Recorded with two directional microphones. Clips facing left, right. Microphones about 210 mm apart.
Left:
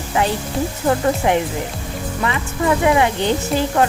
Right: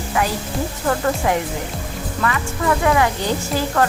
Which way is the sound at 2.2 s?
20° left (ahead or behind).